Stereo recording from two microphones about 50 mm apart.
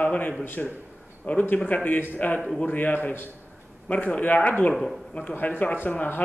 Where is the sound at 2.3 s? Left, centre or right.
Centre.